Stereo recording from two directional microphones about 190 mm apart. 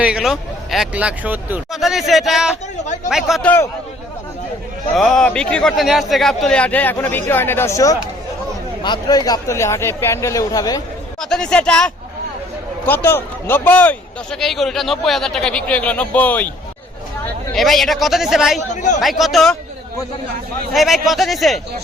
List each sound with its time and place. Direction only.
0.0 s speech: 5° right (ahead or behind)
2.8 s speech: 40° left (ahead or behind)
3.1 s speech: centre (ahead or behind)
4.9 s a man's voice: 5° left (ahead or behind); by 10.8 s 20° left (ahead or behind)
11.2 s a man's voice: 5° left (ahead or behind)
17.5 s speech: centre (ahead or behind)
18.7 s speech: 40° left (ahead or behind)
18.9 s speech: centre (ahead or behind)
20.7 s speech: centre (ahead or behind)